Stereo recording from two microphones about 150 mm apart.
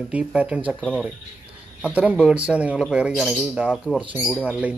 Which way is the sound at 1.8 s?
10° right (ahead or behind).